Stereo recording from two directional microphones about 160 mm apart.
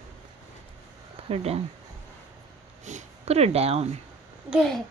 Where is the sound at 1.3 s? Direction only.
40° right (ahead or behind).